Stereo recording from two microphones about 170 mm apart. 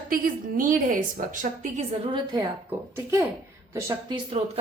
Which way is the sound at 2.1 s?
25° right (ahead or behind).